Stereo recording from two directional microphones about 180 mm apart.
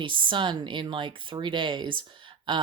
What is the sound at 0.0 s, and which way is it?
Speech, 25° right (ahead or behind).